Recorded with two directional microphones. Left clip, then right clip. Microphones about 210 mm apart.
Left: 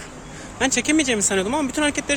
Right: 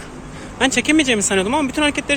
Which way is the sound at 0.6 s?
10° left (ahead or behind).